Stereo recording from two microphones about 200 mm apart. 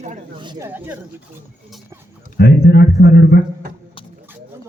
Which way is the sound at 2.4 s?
55° left (ahead or behind).